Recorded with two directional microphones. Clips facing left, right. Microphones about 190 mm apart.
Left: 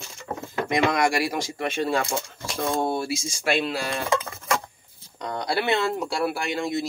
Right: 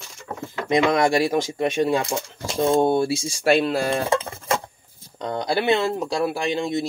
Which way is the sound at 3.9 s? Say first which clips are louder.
Right 4 dB; 30° right (ahead or behind).